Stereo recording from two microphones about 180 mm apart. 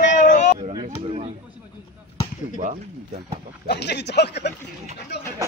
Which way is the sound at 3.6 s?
70° left (ahead or behind).